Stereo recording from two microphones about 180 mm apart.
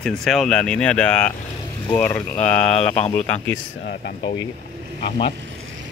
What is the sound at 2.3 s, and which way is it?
Speech, 40° left (ahead or behind).